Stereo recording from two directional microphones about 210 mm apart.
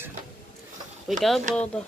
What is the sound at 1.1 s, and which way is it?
Speech, centre (ahead or behind).